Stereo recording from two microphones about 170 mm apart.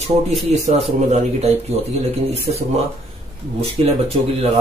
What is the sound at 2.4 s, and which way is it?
Speech, 35° right (ahead or behind).